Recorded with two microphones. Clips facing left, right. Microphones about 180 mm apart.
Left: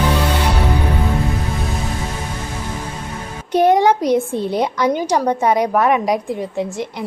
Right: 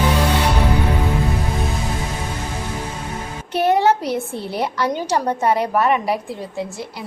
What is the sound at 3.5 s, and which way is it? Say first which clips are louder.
A woman's voice: left 3 dB; 15° left (ahead or behind).